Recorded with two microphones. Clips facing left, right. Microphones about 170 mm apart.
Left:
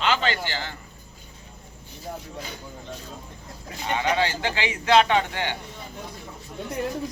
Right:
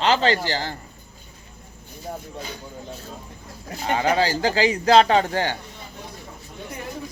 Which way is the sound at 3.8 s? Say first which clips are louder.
Right 3 dB; 40° right (ahead or behind).